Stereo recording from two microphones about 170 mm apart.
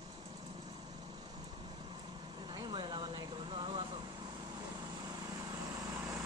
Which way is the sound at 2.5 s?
30° right (ahead or behind).